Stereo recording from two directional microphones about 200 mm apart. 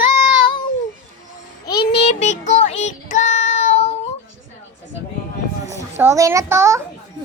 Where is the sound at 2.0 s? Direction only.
35° left (ahead or behind).